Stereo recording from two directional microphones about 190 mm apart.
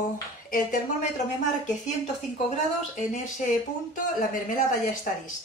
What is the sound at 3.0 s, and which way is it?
Speech, 45° left (ahead or behind).